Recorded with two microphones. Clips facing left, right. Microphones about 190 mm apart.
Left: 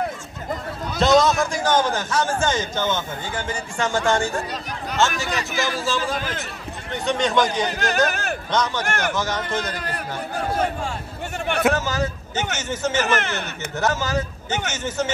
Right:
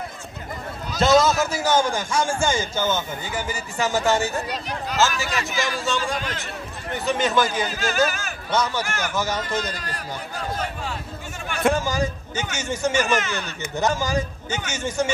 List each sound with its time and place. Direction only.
0.9 s a man's voice: centre (ahead or behind)
5.6 s a man's voice: centre (ahead or behind)
7.6 s a man's voice: 65° left (ahead or behind)
8.5 s a man's voice: 10° right (ahead or behind)
8.8 s speech: 65° left (ahead or behind)
9.1 s a man's voice: 10° right (ahead or behind)
9.8 s speech: 55° left (ahead or behind)
11.7 s a man's voice: 15° right (ahead or behind)
13.2 s speech: 60° left (ahead or behind)
13.7 s a man's voice: 15° right (ahead or behind)